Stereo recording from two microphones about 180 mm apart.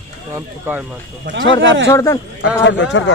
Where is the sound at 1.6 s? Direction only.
90° right.